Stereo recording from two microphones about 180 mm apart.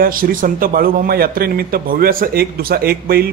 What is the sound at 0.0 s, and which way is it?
A man's voice, 50° right (ahead or behind).